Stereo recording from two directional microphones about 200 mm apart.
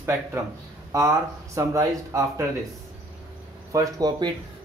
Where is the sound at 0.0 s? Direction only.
15° right (ahead or behind).